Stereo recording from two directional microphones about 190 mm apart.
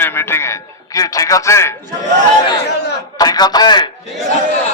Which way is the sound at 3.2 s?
20° left (ahead or behind).